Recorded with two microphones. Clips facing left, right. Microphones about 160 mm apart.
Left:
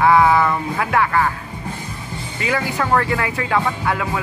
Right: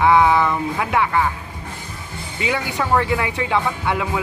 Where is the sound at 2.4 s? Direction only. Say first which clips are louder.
Left 1 dB; 15° right (ahead or behind).